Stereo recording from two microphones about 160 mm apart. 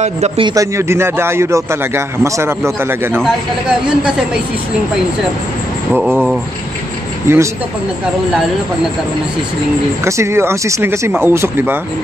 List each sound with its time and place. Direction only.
0.4 s a man's voice: 20° right (ahead or behind)
7.3 s a man's voice: 15° right (ahead or behind)
10.0 s a man's voice: 15° right (ahead or behind)